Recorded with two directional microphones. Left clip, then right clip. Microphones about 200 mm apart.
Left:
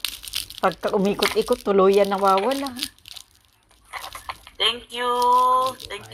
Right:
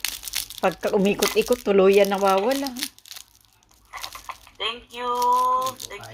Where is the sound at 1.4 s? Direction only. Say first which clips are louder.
Even; 10° right (ahead or behind).